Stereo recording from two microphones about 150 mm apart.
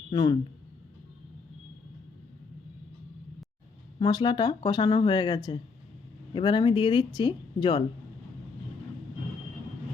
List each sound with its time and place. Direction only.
0.1 s speech: 25° left (ahead or behind)
4.0 s speech: 25° left (ahead or behind)